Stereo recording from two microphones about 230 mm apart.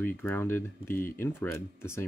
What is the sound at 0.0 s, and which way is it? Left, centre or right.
Speech, centre.